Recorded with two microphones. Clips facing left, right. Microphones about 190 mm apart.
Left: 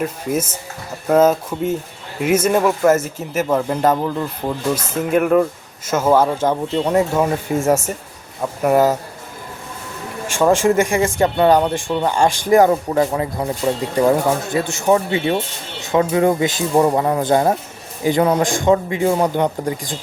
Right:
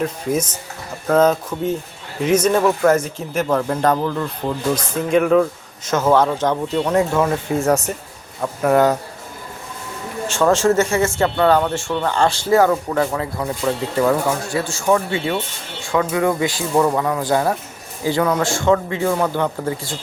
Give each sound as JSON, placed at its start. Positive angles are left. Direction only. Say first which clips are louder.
{"t": 0.0, "sound": "speech", "louder": "even", "side_deg": 5}
{"t": 10.2, "sound": "speech", "louder": "left 1 dB", "side_deg": 10}